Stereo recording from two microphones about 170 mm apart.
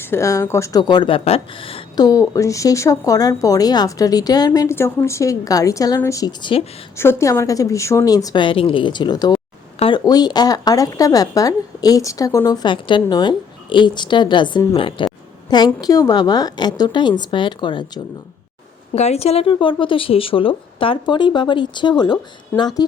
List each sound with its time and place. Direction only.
0.0 s speech: 15° left (ahead or behind); by 2.0 s 30° left (ahead or behind)
2.0 s speech: 20° left (ahead or behind)
6.9 s speech: 15° left (ahead or behind)
9.7 s a sound: 35° left (ahead or behind)
10.0 s speech: 25° left (ahead or behind)
18.9 s speech: 40° left (ahead or behind)